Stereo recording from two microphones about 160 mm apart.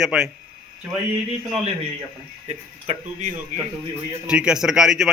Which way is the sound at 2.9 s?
45° right (ahead or behind).